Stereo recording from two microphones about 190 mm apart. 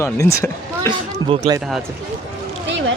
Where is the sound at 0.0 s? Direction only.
15° left (ahead or behind).